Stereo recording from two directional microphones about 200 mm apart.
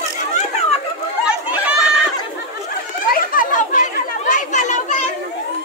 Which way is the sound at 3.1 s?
45° left (ahead or behind).